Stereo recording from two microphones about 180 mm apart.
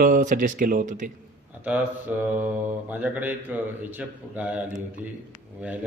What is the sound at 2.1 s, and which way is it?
Speech, 5° right (ahead or behind).